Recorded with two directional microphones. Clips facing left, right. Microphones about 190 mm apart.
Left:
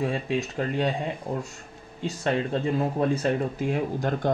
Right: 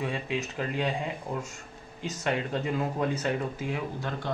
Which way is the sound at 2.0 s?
30° left (ahead or behind).